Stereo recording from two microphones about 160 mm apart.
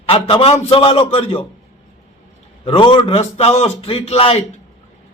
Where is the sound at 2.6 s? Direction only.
35° left (ahead or behind).